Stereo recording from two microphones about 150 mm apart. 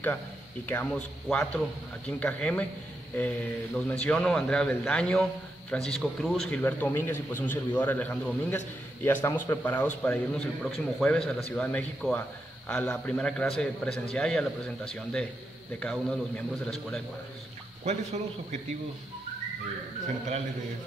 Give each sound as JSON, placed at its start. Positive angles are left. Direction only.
{"t": 0.7, "sound": "a man's voice", "side_deg": 10}
{"t": 6.6, "sound": "a man's voice", "side_deg": 15}
{"t": 17.8, "sound": "speech", "side_deg": -50}